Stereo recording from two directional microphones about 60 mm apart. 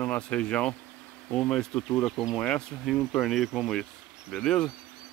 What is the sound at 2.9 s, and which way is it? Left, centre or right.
Speech, centre.